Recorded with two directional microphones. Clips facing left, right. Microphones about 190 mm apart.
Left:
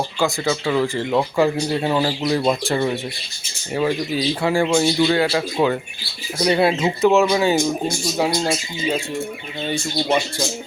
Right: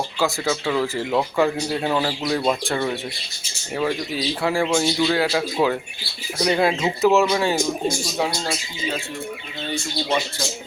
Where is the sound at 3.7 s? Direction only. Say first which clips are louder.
Left 3 dB; centre (ahead or behind).